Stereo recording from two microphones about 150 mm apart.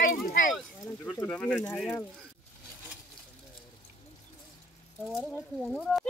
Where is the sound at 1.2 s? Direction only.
10° left (ahead or behind).